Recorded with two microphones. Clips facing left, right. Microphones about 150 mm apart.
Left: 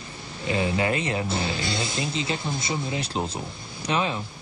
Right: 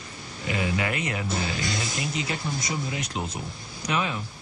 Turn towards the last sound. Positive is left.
turn(degrees=30)  # may be behind; listen again after turning